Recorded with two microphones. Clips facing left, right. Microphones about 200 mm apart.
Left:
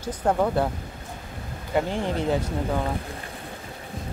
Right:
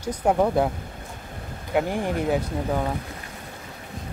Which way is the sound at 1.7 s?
10° right (ahead or behind).